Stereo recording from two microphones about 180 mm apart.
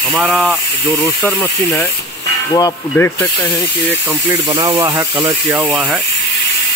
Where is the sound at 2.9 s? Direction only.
10° left (ahead or behind).